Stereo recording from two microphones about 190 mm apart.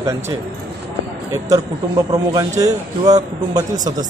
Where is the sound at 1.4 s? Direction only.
20° right (ahead or behind).